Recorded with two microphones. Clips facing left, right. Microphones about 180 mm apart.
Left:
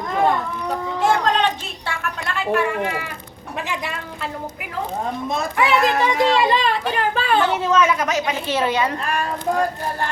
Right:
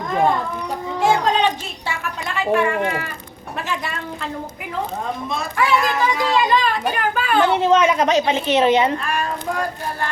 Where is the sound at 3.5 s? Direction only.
15° left (ahead or behind).